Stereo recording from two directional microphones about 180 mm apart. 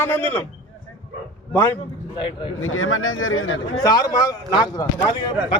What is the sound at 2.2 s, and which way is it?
Speech, 25° left (ahead or behind).